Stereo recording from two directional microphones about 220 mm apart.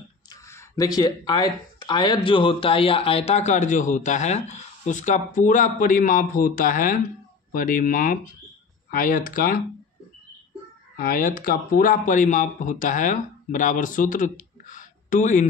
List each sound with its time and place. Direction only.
0.3 s speech: 15° left (ahead or behind); by 9.6 s 40° left (ahead or behind)
11.0 s speech: 40° left (ahead or behind)